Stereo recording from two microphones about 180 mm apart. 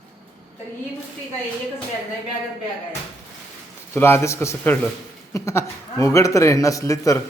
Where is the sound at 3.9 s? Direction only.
15° left (ahead or behind).